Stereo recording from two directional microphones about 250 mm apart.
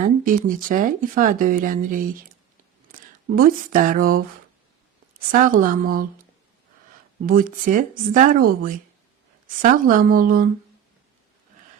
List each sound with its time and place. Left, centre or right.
0.0 s speech: right
5.3 s speech: right
7.3 s speech: right